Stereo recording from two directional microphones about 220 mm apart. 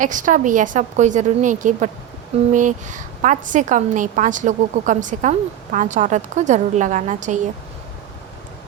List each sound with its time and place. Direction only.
0.0 s a woman's voice: 35° right (ahead or behind)